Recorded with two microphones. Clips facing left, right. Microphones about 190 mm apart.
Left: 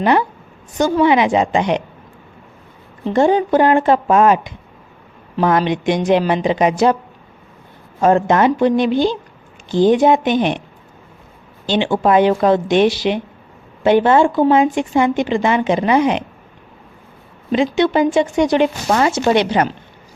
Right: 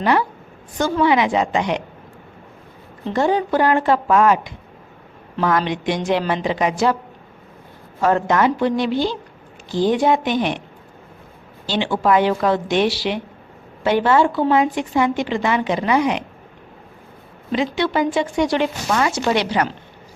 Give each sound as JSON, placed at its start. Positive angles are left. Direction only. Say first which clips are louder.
{"t": 0.0, "sound": "speech", "louder": "left 3 dB", "side_deg": 20}
{"t": 3.2, "sound": "speech", "louder": "left 5 dB", "side_deg": 20}
{"t": 8.0, "sound": "speech", "louder": "left 4 dB", "side_deg": 25}
{"t": 11.6, "sound": "speech", "louder": "left 4 dB", "side_deg": 20}
{"t": 17.5, "sound": "speech", "louder": "left 5 dB", "side_deg": 20}
{"t": 18.9, "sound": "speech", "louder": "left 4 dB", "side_deg": 35}